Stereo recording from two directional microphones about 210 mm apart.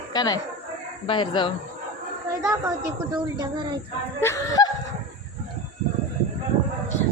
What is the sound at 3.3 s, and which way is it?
Speech, 20° right (ahead or behind).